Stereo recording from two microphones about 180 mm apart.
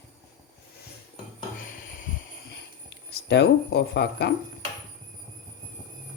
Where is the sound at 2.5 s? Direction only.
80° left.